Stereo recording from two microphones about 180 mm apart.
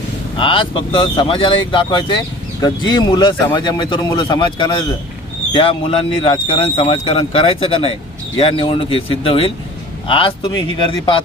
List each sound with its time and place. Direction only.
0.3 s a man's voice: 30° left (ahead or behind)